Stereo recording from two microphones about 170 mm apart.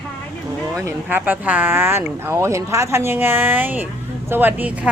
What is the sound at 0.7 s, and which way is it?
Speech, 15° right (ahead or behind).